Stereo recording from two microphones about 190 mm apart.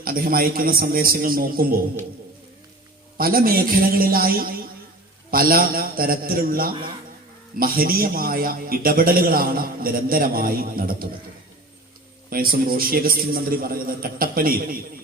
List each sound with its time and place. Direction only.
0.0 s a man's voice: 50° right (ahead or behind)
3.2 s a man's voice: 50° right (ahead or behind)
12.3 s a man's voice: 50° right (ahead or behind)